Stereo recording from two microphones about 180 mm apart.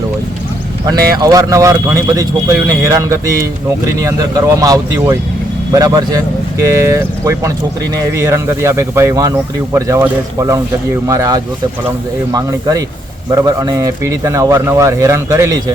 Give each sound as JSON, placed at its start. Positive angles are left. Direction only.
{"t": 0.9, "sound": "speech", "side_deg": -20}